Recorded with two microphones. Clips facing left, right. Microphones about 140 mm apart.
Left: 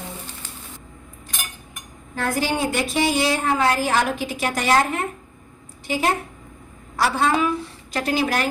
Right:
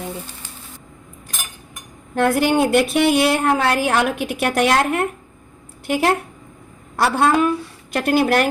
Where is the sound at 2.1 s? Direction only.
65° right (ahead or behind).